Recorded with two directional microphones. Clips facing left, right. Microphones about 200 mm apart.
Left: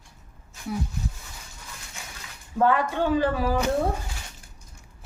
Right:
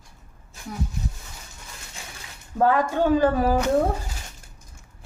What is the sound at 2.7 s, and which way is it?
Speech, 45° right (ahead or behind).